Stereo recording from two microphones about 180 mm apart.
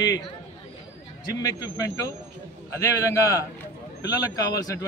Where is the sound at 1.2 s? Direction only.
20° left (ahead or behind).